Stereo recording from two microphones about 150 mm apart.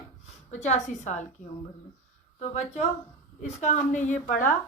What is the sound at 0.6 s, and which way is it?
Speech, 50° left (ahead or behind).